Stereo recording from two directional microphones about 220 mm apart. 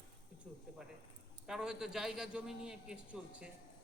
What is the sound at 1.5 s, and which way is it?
A man's voice, centre (ahead or behind).